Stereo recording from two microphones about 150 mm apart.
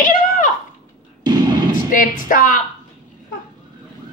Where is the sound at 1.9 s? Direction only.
65° left (ahead or behind).